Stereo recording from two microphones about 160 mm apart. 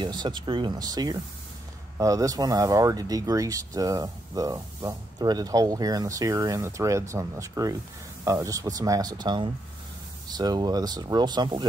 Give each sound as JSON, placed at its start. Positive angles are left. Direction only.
{"t": 0.0, "sound": "speech", "side_deg": -30}